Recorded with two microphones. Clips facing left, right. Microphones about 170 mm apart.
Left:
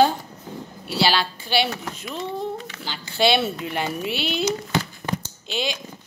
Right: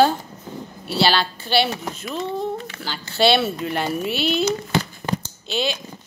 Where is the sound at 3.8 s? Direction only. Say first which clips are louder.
Right 4 dB; 45° right (ahead or behind).